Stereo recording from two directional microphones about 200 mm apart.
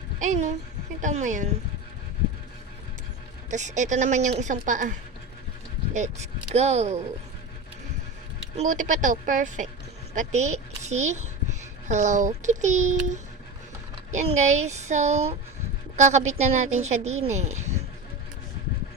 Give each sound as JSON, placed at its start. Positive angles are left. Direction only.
{"t": 0.2, "sound": "a woman's voice", "side_deg": -35}
{"t": 3.5, "sound": "a woman's voice", "side_deg": -35}
{"t": 8.5, "sound": "a woman's voice", "side_deg": -40}